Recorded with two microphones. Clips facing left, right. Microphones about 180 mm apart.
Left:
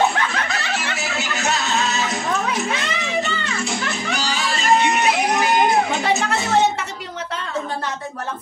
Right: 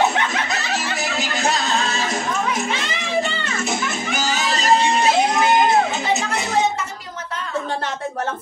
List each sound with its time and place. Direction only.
0.7 s music: 35° right (ahead or behind)
3.4 s children playing: 45° right (ahead or behind); by 5.6 s 25° right (ahead or behind)
5.7 s music: 25° right (ahead or behind)